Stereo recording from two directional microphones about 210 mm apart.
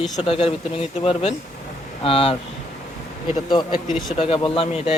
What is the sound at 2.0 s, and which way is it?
Speech, 25° left (ahead or behind).